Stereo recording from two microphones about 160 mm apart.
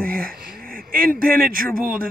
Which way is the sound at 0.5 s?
65° right (ahead or behind).